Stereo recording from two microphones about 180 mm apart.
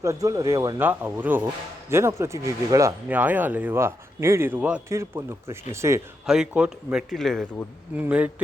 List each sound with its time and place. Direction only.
0.0 s speech: 15° right (ahead or behind)
6.2 s speech: 5° right (ahead or behind)